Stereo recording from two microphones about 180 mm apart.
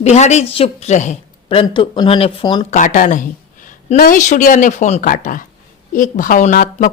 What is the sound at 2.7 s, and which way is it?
A woman's voice, 45° left (ahead or behind).